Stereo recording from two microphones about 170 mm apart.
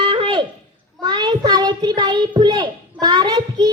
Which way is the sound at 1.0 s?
25° right (ahead or behind).